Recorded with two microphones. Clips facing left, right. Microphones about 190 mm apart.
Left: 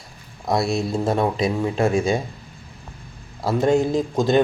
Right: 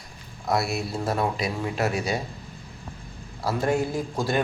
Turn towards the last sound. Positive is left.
turn(degrees=20)  # may be behind; listen again after turning